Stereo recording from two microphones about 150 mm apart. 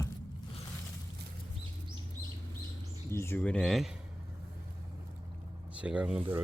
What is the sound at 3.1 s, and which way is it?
Speech, 15° left (ahead or behind).